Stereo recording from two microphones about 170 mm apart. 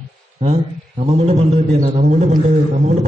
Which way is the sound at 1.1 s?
40° right (ahead or behind).